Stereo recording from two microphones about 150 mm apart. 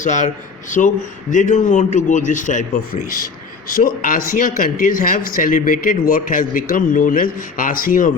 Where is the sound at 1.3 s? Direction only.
60° left (ahead or behind).